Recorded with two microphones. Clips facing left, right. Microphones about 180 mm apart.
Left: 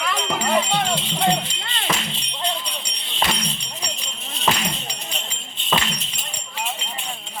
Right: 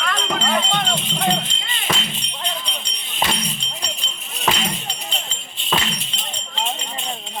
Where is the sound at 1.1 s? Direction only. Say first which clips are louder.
Left 1 dB; 10° left (ahead or behind).